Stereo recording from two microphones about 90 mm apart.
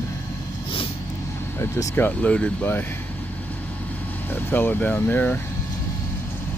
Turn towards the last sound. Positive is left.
turn(degrees=20)  # may be behind; listen again after turning